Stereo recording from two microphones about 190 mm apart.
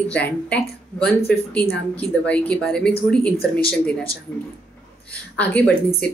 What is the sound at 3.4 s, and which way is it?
Speech, 50° left (ahead or behind).